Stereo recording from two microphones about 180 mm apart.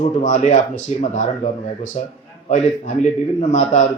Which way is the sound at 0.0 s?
45° left (ahead or behind).